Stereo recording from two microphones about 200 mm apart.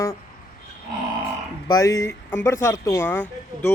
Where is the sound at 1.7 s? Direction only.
15° left (ahead or behind).